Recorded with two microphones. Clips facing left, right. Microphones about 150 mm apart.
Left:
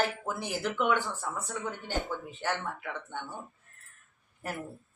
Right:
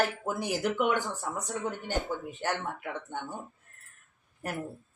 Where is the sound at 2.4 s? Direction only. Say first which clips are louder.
Right 1 dB; 15° right (ahead or behind).